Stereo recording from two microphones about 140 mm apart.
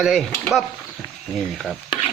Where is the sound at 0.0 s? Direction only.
Centre (ahead or behind).